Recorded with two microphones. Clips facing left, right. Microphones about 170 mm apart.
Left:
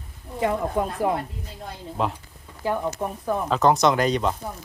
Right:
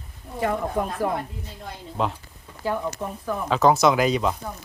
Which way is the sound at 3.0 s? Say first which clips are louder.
Left 2 dB; 20° left (ahead or behind).